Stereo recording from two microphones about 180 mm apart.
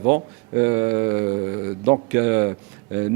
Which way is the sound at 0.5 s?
15° right (ahead or behind).